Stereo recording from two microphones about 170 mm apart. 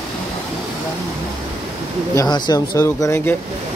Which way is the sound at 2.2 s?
25° left (ahead or behind).